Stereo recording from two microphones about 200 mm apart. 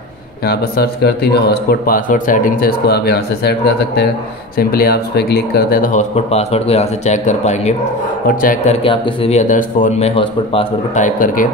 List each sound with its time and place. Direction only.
0.5 s speech: 50° left (ahead or behind)
8.8 s speech: 30° left (ahead or behind)